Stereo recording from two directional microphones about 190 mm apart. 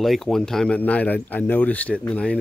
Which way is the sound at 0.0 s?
Centre (ahead or behind).